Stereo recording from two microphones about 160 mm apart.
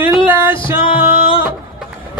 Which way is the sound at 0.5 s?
30° left (ahead or behind).